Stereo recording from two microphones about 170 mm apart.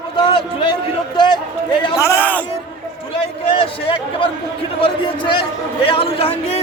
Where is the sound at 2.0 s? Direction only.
15° left (ahead or behind).